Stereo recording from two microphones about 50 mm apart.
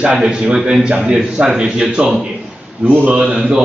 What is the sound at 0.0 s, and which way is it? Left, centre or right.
A man's voice, right.